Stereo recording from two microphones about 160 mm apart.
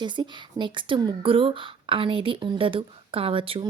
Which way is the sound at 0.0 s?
30° right (ahead or behind).